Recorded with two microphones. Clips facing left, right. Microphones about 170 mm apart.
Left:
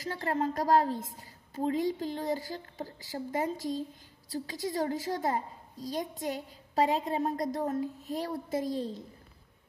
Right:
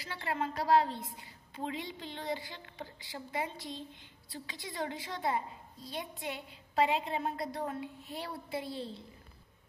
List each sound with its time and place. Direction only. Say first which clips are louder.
0.0 s a woman's voice: left 5 dB; 40° left (ahead or behind)